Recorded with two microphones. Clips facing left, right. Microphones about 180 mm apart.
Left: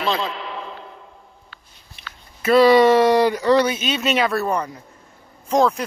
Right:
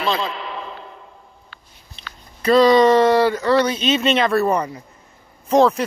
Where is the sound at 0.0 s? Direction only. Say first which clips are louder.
Right 1 dB; 90° right.